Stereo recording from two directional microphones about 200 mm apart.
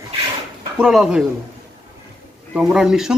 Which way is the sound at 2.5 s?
5° right (ahead or behind).